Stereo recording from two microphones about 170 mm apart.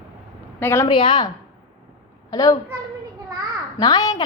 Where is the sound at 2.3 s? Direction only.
20° left (ahead or behind).